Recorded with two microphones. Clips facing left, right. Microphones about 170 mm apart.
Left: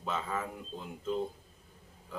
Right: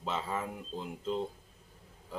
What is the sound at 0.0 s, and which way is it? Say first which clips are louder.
Speech: even; 25° right (ahead or behind).